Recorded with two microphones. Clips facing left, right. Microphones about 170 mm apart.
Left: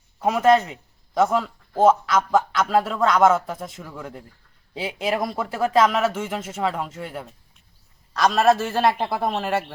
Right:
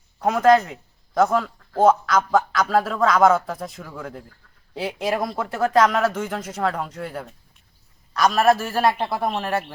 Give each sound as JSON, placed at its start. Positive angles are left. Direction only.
{"t": 0.2, "sound": "speech", "side_deg": 5}
{"t": 8.5, "sound": "speech", "side_deg": 20}
{"t": 8.8, "sound": "speech", "side_deg": 0}